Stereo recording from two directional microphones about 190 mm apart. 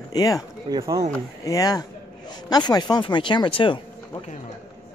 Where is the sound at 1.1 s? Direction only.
15° left (ahead or behind).